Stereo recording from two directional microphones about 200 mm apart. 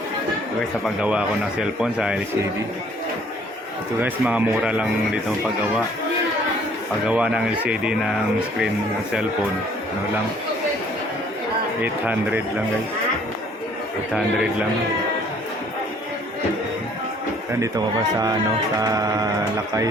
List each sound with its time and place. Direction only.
1.0 s a man's voice: 5° right (ahead or behind)
4.0 s speech: 5° right (ahead or behind)
7.1 s a man's voice: 5° right (ahead or behind)
11.8 s speech: 10° right (ahead or behind)
17.6 s speech: 20° right (ahead or behind)